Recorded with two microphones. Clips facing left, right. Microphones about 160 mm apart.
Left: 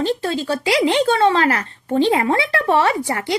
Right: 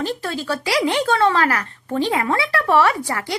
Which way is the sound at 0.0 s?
25° left (ahead or behind).